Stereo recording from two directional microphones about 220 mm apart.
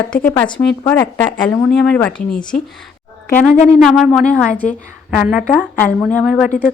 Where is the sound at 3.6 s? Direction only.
Centre (ahead or behind).